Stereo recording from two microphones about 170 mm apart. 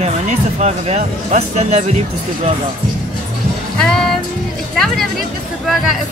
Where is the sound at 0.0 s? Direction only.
40° right (ahead or behind).